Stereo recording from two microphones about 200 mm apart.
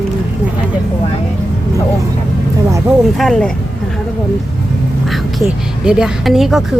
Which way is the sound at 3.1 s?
Centre (ahead or behind).